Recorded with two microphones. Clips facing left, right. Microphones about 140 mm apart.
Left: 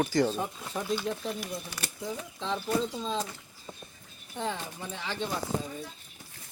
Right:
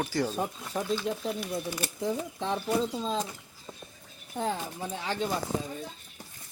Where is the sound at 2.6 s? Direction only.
5° right (ahead or behind).